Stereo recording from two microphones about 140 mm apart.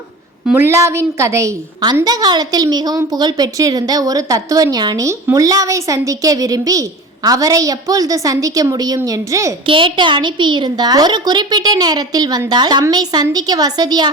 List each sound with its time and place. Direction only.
0.5 s a woman's voice: 20° right (ahead or behind)
9.6 s a woman's voice: 35° right (ahead or behind)